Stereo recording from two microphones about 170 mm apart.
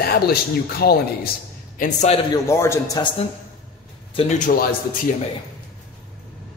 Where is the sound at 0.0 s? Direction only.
65° left (ahead or behind).